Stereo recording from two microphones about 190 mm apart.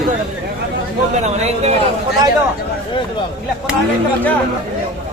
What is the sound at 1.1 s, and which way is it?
Speech, 35° right (ahead or behind).